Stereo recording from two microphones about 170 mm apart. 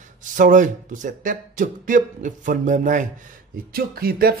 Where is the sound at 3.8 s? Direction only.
65° right (ahead or behind).